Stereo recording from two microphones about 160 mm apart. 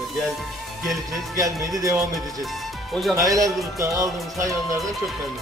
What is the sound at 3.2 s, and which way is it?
Music, 20° right (ahead or behind).